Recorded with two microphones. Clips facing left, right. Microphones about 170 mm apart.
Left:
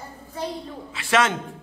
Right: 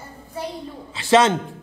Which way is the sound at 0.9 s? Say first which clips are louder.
Right 6 dB; 30° right (ahead or behind).